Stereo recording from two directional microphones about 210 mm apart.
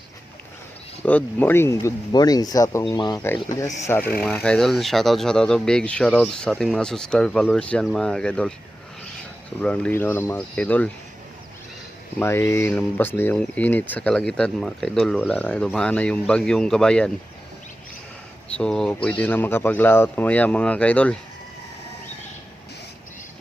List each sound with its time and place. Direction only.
1.0 s speech: 10° left (ahead or behind)
9.6 s speech: 5° left (ahead or behind)
12.2 s speech: 10° left (ahead or behind)
18.5 s speech: 5° left (ahead or behind)